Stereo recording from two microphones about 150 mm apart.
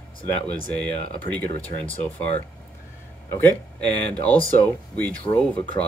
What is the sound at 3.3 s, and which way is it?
Speech, 10° left (ahead or behind).